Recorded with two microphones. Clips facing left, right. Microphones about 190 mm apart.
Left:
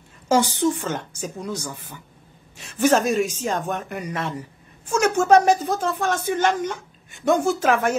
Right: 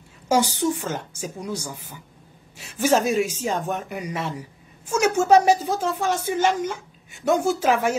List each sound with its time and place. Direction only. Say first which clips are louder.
0.3 s speech: left 1 dB; 10° right (ahead or behind)